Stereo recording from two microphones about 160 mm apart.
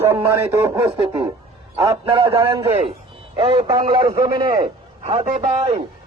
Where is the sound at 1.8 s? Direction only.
35° right (ahead or behind).